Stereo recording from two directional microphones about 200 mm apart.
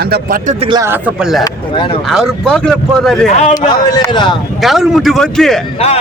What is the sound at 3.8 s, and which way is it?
Speech, 20° left (ahead or behind).